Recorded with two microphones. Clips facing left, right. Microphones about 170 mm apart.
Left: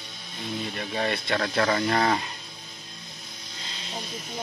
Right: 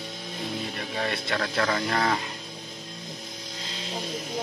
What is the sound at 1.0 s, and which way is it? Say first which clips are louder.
Speech: left 2 dB; centre (ahead or behind).